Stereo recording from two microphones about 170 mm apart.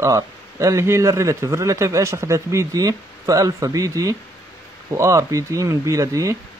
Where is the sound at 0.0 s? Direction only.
20° right (ahead or behind).